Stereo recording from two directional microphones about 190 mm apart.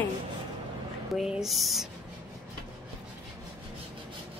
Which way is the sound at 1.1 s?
Centre (ahead or behind).